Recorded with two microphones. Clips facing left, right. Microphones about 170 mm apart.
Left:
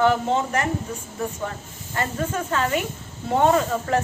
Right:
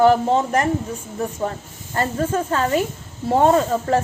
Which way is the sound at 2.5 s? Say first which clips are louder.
Right 4 dB; 35° right (ahead or behind).